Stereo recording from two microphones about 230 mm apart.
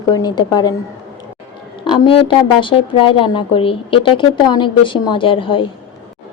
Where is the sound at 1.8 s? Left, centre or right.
Left.